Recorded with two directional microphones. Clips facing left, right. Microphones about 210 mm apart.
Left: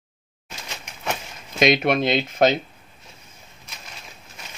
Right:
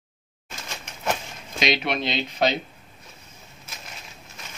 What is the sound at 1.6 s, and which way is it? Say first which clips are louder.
Speech: left 6 dB; 50° left (ahead or behind).